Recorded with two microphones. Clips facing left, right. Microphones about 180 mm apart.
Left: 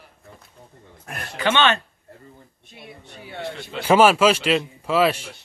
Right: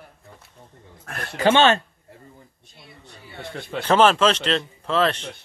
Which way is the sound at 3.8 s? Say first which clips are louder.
Left 2 dB; 10° left (ahead or behind).